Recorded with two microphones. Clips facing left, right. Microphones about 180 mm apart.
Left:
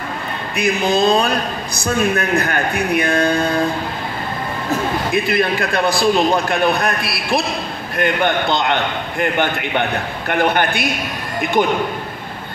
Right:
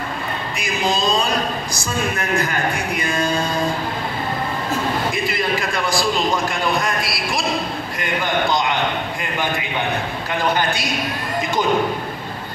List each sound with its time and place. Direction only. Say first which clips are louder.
0.6 s a man's voice: left 6 dB; 60° left (ahead or behind)
5.1 s a man's voice: left 5 dB; 60° left (ahead or behind)